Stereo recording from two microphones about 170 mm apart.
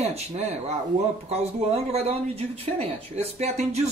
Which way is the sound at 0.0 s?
40° right (ahead or behind).